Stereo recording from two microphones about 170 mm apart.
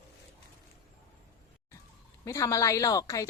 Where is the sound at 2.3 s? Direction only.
20° left (ahead or behind).